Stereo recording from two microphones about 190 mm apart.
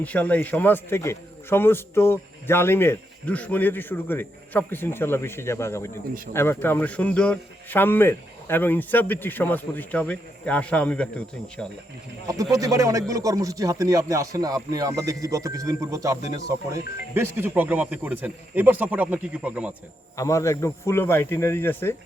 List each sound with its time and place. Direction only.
0.0 s a man's voice: 10° left (ahead or behind)
12.3 s speech: 20° right (ahead or behind)
20.1 s a man's voice: 15° left (ahead or behind)